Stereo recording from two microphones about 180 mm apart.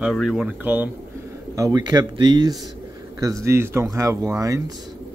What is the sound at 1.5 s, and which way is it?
Speech, 20° right (ahead or behind).